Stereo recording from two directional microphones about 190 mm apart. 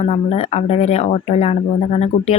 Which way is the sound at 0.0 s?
35° left (ahead or behind).